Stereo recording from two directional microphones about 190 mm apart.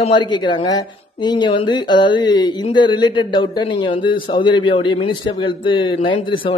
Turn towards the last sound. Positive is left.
turn(degrees=25)  # may be behind; listen again after turning